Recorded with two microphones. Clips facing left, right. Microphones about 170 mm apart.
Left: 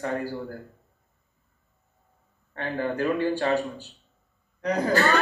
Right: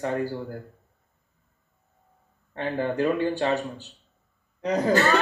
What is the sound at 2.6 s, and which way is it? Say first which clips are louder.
Speech: right 2 dB; 15° right (ahead or behind).